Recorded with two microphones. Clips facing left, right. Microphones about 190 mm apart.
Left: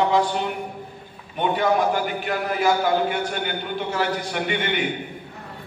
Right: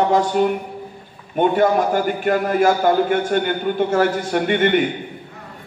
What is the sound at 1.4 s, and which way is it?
A man's voice, 45° right (ahead or behind).